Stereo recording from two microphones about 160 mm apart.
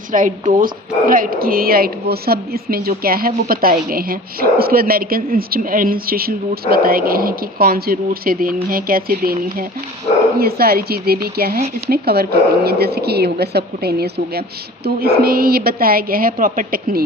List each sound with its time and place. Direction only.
0.1 s a woman's voice: 55° right (ahead or behind); by 14.4 s 85° right
14.8 s a woman's voice: 75° right (ahead or behind)